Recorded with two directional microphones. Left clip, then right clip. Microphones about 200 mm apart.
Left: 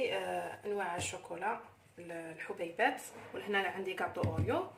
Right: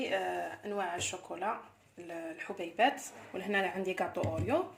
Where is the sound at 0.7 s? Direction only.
35° right (ahead or behind).